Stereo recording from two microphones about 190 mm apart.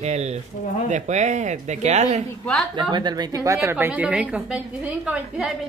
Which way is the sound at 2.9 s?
20° right (ahead or behind).